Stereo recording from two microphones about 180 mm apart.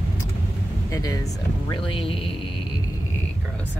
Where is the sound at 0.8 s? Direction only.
20° left (ahead or behind).